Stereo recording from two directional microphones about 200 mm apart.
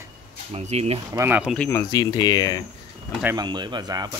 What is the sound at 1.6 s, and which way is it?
Speech, 15° left (ahead or behind).